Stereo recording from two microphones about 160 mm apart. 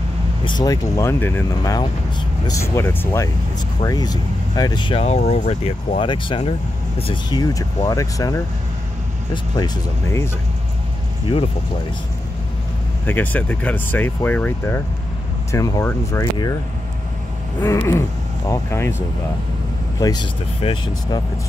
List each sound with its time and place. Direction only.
0.5 s speech: 25° left (ahead or behind)
13.0 s speech: 10° left (ahead or behind)
17.6 s speech: 15° left (ahead or behind)
20.0 s speech: 25° left (ahead or behind)